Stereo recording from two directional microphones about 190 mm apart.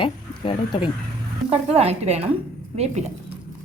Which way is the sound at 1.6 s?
35° right (ahead or behind).